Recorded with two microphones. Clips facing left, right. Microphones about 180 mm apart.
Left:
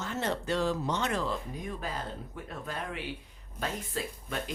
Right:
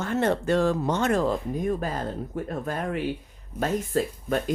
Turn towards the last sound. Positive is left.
turn(degrees=-45)  # may be behind; listen again after turning